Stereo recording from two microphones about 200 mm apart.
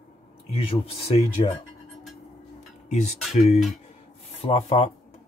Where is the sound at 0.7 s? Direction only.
30° left (ahead or behind).